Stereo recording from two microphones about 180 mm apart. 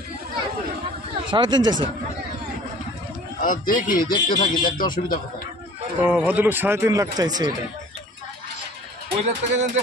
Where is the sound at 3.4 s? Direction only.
50° left (ahead or behind).